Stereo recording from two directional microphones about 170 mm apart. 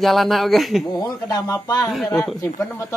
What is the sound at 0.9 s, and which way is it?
Speech, 20° left (ahead or behind).